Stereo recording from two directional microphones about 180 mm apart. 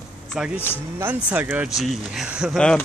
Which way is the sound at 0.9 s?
10° right (ahead or behind).